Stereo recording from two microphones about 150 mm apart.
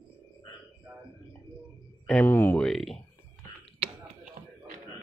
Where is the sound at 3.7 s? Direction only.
40° right (ahead or behind).